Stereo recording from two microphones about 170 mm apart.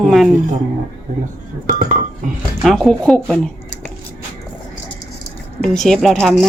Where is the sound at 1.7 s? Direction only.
50° right (ahead or behind).